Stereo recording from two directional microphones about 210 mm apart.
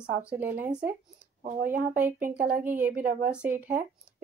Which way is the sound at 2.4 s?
10° right (ahead or behind).